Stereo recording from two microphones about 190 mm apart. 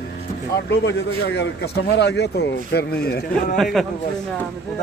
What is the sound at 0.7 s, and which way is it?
A man's voice, 60° left (ahead or behind).